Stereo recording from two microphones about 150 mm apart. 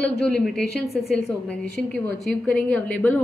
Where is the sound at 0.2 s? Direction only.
5° left (ahead or behind).